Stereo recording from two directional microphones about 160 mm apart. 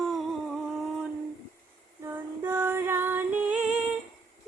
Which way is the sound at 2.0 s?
15° right (ahead or behind).